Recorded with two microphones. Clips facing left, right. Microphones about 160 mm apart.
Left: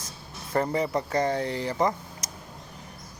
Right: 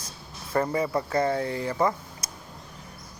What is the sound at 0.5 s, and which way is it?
Speech, 20° left (ahead or behind).